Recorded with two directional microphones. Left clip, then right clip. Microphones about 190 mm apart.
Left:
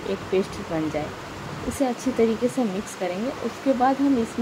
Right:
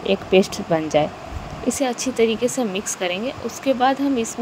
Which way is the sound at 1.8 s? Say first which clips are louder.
Right 1 dB; 30° right (ahead or behind).